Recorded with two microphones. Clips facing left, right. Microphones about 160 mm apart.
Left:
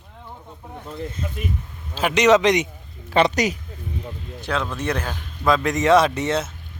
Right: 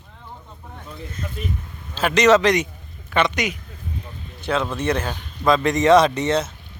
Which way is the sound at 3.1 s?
35° left (ahead or behind).